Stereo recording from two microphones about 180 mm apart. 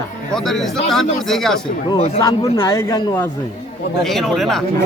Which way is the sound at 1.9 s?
30° left (ahead or behind).